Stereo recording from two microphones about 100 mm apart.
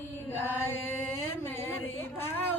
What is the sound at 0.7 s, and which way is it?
Chant, 20° left (ahead or behind).